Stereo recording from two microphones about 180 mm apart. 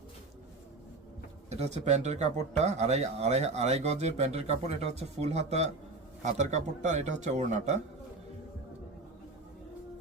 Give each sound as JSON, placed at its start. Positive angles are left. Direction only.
{"t": 1.5, "sound": "speech", "side_deg": -35}